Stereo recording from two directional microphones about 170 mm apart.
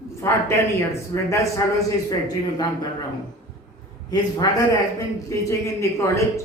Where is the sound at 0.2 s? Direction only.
15° left (ahead or behind).